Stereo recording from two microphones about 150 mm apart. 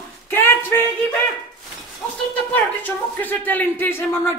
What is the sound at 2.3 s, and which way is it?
Speech, 10° left (ahead or behind).